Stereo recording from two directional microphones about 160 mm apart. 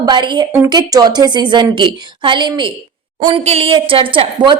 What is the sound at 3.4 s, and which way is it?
A woman's voice, 40° right (ahead or behind).